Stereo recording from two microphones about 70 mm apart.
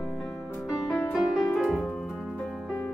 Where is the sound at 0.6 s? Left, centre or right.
Centre.